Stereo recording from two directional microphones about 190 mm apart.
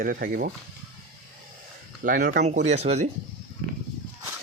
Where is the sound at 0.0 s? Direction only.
50° right (ahead or behind).